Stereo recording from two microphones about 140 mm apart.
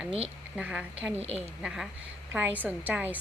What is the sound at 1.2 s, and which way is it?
Speech, 50° right (ahead or behind).